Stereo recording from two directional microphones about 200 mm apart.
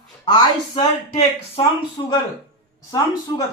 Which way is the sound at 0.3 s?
20° left (ahead or behind).